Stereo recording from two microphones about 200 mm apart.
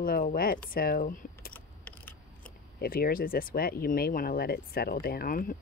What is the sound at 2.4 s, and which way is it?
Speech, 50° left (ahead or behind).